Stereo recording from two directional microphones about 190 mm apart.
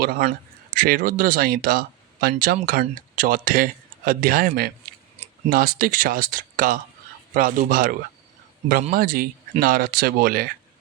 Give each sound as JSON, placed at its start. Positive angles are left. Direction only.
{"t": 0.0, "sound": "speech", "side_deg": -55}